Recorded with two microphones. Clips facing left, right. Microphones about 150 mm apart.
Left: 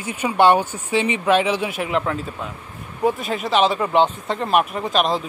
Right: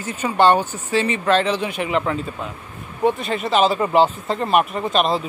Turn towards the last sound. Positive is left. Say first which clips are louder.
# right 1 dB
turn(degrees=0)  # may be behind; listen again after turning